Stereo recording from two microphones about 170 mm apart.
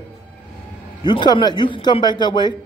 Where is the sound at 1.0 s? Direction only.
25° left (ahead or behind).